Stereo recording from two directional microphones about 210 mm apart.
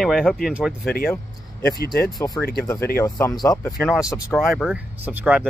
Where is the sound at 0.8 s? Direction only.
45° left (ahead or behind).